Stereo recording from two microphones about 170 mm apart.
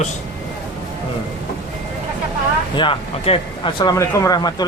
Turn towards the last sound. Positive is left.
turn(degrees=25)  # may be behind; listen again after turning